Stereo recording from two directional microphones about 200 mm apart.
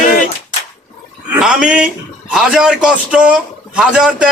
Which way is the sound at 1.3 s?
5° right (ahead or behind).